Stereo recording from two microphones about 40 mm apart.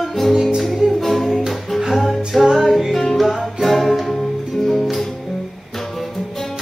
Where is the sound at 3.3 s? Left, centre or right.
Centre.